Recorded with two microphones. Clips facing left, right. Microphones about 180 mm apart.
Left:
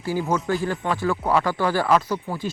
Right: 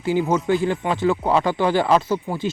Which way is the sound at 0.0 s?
20° right (ahead or behind).